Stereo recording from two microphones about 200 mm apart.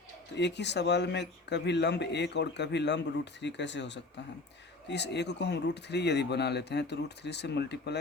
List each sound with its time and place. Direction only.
0.3 s speech: 60° left (ahead or behind)